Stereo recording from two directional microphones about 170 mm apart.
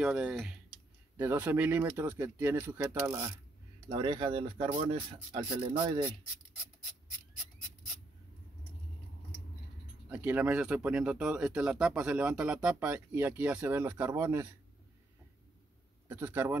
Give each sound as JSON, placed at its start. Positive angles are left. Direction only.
{"t": 0.0, "sound": "speech", "side_deg": -5}
{"t": 3.9, "sound": "speech", "side_deg": -30}
{"t": 10.0, "sound": "speech", "side_deg": -10}
{"t": 16.1, "sound": "speech", "side_deg": -15}